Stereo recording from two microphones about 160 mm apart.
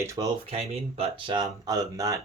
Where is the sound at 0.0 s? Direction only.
20° right (ahead or behind).